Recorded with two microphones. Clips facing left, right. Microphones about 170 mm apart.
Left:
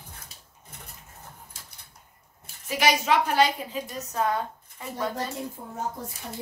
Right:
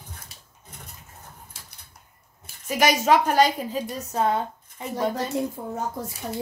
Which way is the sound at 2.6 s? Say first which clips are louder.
Right 3 dB; 45° right (ahead or behind).